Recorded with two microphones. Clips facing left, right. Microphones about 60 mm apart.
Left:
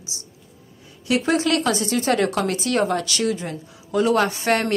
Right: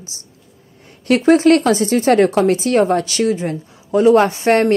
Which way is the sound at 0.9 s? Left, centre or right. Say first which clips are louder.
Right 6 dB; right.